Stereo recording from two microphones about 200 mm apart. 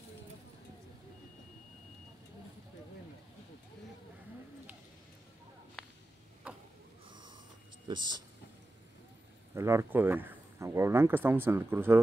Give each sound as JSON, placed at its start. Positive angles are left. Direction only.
{"t": 7.1, "sound": "snort", "side_deg": -20}
{"t": 7.9, "sound": "speech", "side_deg": -20}
{"t": 9.5, "sound": "speech", "side_deg": -15}